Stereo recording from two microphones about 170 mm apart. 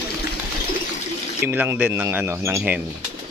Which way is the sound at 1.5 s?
10° right (ahead or behind).